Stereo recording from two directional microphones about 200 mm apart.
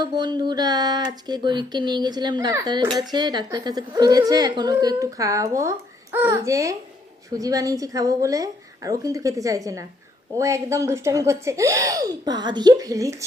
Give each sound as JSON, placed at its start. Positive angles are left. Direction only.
{"t": 0.0, "sound": "speech", "side_deg": -20}